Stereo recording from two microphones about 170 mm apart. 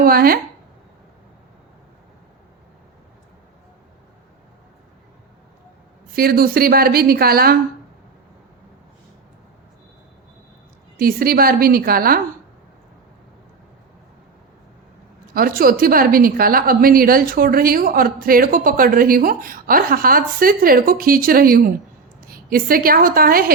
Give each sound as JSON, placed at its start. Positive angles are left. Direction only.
{"t": 0.0, "sound": "speech", "side_deg": -60}
{"t": 6.1, "sound": "a woman's voice", "side_deg": -60}
{"t": 10.9, "sound": "a woman's voice", "side_deg": -60}
{"t": 15.4, "sound": "a woman's voice", "side_deg": -55}